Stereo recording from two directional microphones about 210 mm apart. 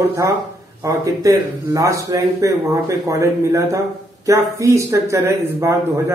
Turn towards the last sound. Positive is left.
turn(degrees=-15)  # may be behind; listen again after turning